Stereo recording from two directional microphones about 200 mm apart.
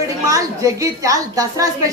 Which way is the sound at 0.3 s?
15° right (ahead or behind).